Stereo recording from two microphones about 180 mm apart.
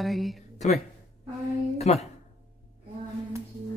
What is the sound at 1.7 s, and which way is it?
Speech, 35° left (ahead or behind).